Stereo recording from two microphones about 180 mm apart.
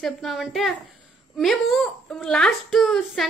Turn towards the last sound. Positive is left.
turn(degrees=0)  # may be behind; listen again after turning